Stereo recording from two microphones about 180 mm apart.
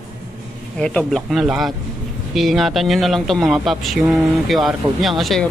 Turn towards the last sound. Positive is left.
turn(degrees=0)  # may be behind; listen again after turning